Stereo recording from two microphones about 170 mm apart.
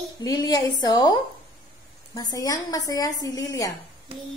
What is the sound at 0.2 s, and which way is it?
Speech, 25° left (ahead or behind).